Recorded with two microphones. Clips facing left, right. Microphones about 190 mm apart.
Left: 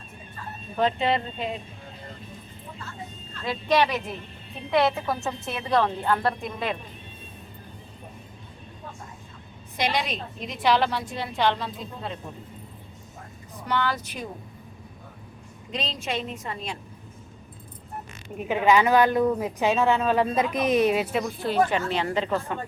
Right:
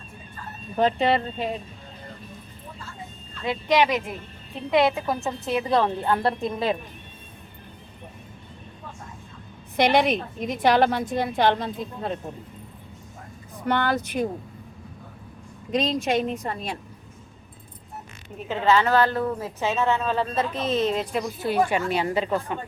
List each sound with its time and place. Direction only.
0.8 s speech: 40° right (ahead or behind)
3.4 s a woman's voice: 15° right (ahead or behind)
9.7 s a woman's voice: 55° right (ahead or behind)
13.7 s speech: 55° right (ahead or behind)
15.7 s a woman's voice: 45° right (ahead or behind)
18.4 s speech: 15° left (ahead or behind)
21.4 s a woman's voice: 10° right (ahead or behind)